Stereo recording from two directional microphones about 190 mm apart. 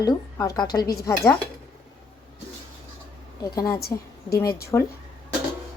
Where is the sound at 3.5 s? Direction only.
20° left (ahead or behind).